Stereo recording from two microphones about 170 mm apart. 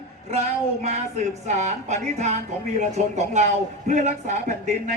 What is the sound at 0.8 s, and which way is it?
Speech, 40° right (ahead or behind).